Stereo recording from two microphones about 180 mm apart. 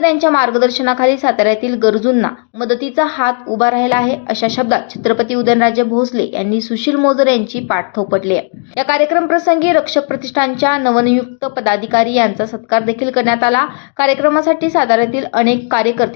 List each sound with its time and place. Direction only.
0.0 s a woman's voice: 20° left (ahead or behind)